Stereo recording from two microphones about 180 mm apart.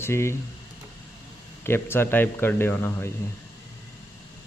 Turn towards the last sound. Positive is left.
turn(degrees=15)  # may be behind; listen again after turning